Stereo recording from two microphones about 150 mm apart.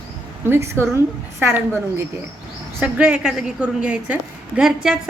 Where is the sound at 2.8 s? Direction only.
5° right (ahead or behind).